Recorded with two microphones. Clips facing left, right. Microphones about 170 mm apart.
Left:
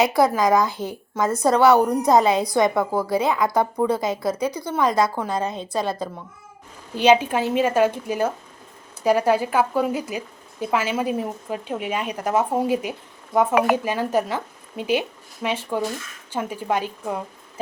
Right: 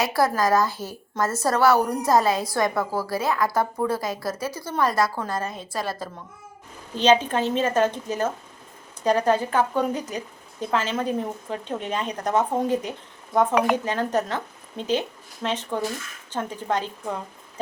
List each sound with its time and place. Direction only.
0.2 s a woman's voice: 20° left (ahead or behind)
6.9 s speech: 10° left (ahead or behind)